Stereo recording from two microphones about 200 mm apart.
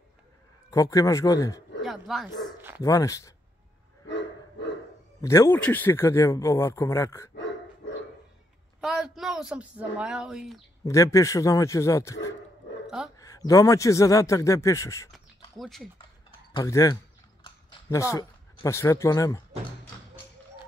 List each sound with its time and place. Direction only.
0.7 s speech: 15° left (ahead or behind)
1.8 s speech: centre (ahead or behind)
2.8 s speech: 15° left (ahead or behind)
4.1 s dog: 65° left (ahead or behind)
5.2 s speech: 15° left (ahead or behind)
7.3 s dog: 65° left (ahead or behind)
8.8 s speech: 5° right (ahead or behind)
10.9 s speech: 15° left (ahead or behind)
12.8 s dog: centre (ahead or behind)
13.2 s speech: 15° left (ahead or behind)
15.5 s speech: centre (ahead or behind)
16.5 s a sound: 15° left (ahead or behind)